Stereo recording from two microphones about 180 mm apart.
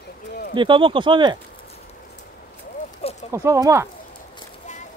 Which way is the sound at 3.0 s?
35° left (ahead or behind).